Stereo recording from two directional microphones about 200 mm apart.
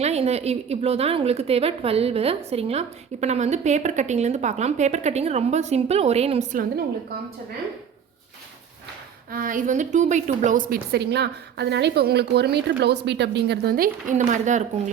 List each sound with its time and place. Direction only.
0.0 s a woman's voice: 30° right (ahead or behind)
9.3 s a woman's voice: 45° right (ahead or behind)